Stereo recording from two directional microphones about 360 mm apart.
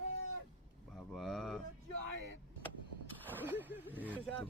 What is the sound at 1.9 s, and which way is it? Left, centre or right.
Speech, right.